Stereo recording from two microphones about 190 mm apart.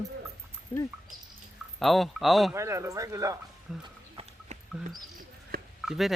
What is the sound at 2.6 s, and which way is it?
Speech, 15° right (ahead or behind).